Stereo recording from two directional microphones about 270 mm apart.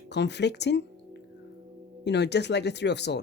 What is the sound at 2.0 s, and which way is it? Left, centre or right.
Speech, left.